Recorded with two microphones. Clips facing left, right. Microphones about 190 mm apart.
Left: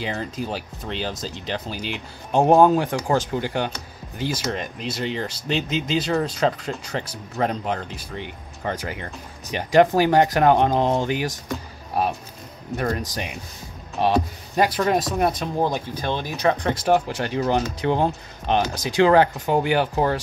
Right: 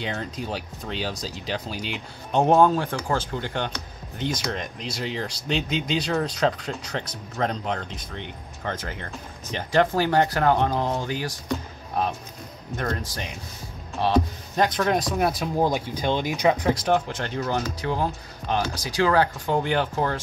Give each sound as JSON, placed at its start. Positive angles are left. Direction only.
{"t": 0.0, "sound": "speech", "side_deg": 0}
{"t": 16.8, "sound": "speech", "side_deg": 5}